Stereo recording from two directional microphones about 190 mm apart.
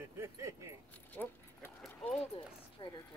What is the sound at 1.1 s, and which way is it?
Keys jangling, 10° left (ahead or behind).